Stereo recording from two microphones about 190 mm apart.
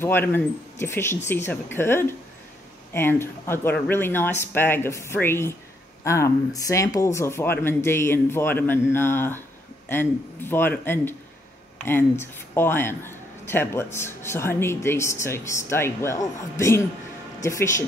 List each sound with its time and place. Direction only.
0.0 s speech: 10° left (ahead or behind)